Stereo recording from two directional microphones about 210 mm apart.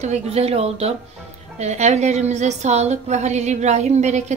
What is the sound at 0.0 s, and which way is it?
A woman's voice, 30° right (ahead or behind).